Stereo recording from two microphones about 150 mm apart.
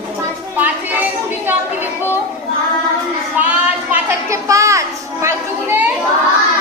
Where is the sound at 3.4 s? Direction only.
10° right (ahead or behind).